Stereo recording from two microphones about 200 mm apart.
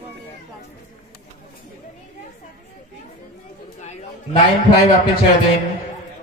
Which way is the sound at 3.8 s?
30° left (ahead or behind).